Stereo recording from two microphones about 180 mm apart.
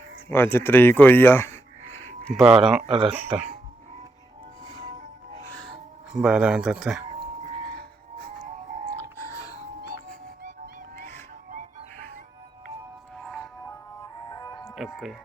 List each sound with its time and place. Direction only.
0.3 s speech: 10° left (ahead or behind)
1.9 s a sound: 10° left (ahead or behind)
2.4 s speech: 5° right (ahead or behind)
5.4 s music: 10° left (ahead or behind)
6.1 s speech: 5° right (ahead or behind)
9.1 s music: 15° left (ahead or behind)
10.4 s music: 45° right (ahead or behind)
13.1 s music: centre (ahead or behind)
14.3 s music: 20° left (ahead or behind)